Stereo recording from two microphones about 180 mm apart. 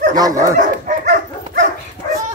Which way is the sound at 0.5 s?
45° right (ahead or behind).